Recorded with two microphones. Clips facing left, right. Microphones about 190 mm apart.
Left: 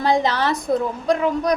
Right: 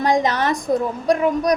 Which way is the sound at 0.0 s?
15° right (ahead or behind).